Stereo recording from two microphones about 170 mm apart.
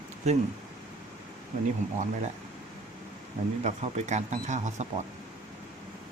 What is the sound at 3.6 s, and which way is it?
Speech, 45° right (ahead or behind).